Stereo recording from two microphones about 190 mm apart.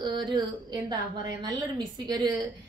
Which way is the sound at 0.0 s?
25° right (ahead or behind).